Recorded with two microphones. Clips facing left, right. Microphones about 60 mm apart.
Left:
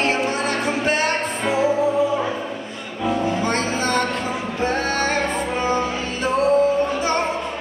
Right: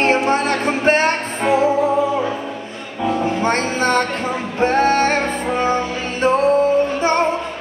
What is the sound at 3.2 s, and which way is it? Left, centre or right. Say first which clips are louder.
Music: right 3 dB; right.